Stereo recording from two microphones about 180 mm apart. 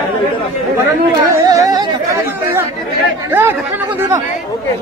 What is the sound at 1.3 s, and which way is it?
Speech, 20° right (ahead or behind).